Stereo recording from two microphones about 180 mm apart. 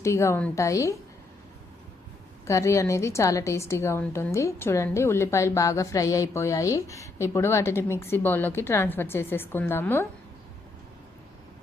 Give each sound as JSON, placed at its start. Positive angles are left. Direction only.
{"t": 0.0, "sound": "a woman's voice", "side_deg": 15}
{"t": 2.5, "sound": "a woman's voice", "side_deg": 15}